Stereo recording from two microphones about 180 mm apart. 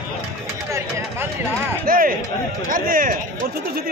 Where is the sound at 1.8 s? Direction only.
50° right (ahead or behind).